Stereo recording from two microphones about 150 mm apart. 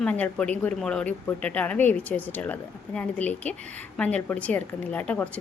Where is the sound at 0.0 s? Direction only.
10° left (ahead or behind).